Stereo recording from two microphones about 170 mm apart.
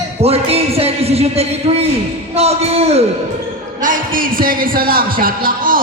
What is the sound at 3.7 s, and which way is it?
Speech, 50° right (ahead or behind).